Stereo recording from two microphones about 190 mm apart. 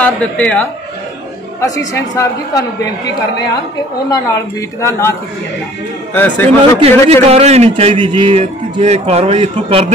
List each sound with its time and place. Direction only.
0.0 s speech: 5° left (ahead or behind)
2.0 s speech: 15° left (ahead or behind)
4.1 s speech: 15° left (ahead or behind)
6.1 s speech: 10° left (ahead or behind)
7.1 s a man's voice: 30° right (ahead or behind)